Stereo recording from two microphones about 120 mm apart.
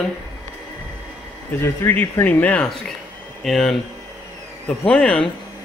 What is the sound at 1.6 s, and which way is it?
Speech, 20° left (ahead or behind).